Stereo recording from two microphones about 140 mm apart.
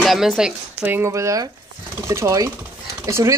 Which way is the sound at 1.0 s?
20° right (ahead or behind).